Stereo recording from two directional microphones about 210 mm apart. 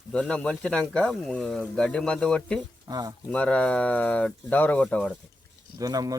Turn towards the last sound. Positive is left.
turn(degrees=-15)  # may be behind; listen again after turning